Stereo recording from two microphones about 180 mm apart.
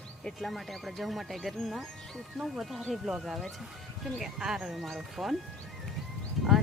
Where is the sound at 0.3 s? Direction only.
Centre (ahead or behind).